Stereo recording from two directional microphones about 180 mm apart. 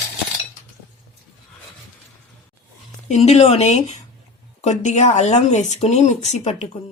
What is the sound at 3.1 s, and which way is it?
Speech, 35° left (ahead or behind).